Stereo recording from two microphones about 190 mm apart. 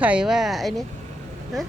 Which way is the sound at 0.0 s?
5° right (ahead or behind).